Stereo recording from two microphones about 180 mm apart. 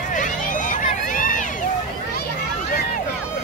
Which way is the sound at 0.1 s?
45° left (ahead or behind).